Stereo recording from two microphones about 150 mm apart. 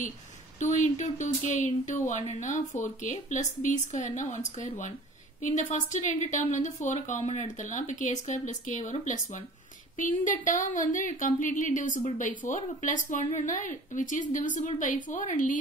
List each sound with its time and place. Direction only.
0.6 s speech: 55° left (ahead or behind)